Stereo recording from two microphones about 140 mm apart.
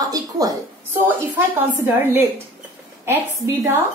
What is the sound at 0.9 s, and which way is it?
A woman's voice, 15° right (ahead or behind).